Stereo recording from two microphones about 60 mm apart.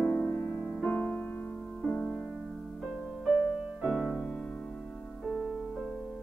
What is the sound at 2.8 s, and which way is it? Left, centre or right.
Music, centre.